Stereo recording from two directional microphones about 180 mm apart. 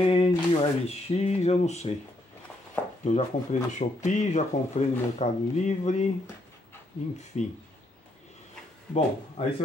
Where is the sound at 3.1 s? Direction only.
40° left (ahead or behind).